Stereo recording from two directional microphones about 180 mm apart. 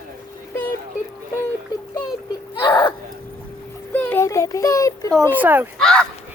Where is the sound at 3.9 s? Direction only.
15° left (ahead or behind).